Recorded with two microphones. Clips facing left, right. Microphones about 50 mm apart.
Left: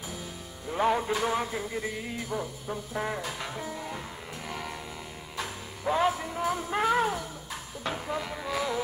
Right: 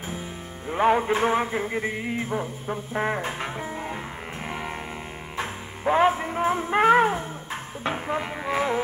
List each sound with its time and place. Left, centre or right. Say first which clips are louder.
0.7 s music: right 5 dB; right